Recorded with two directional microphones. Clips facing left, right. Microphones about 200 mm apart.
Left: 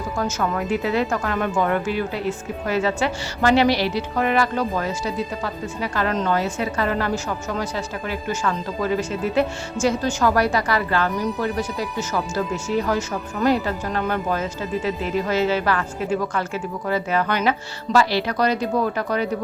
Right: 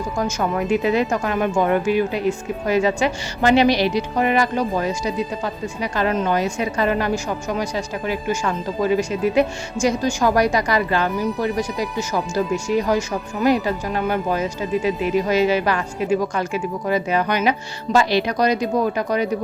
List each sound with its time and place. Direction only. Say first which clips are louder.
0.2 s speech: right 2 dB; 15° right (ahead or behind)